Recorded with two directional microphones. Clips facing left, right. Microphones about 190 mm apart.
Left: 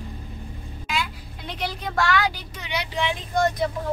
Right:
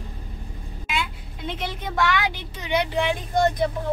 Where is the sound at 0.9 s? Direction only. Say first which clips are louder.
Even; 25° right (ahead or behind).